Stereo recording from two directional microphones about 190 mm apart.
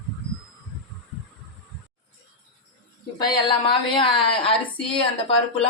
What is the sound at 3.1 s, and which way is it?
Speech, 20° left (ahead or behind).